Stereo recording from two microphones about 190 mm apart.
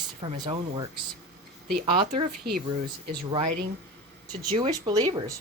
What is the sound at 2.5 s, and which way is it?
Speech, 55° right (ahead or behind).